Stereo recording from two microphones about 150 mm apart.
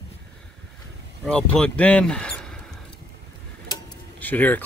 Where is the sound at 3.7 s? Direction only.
25° left (ahead or behind).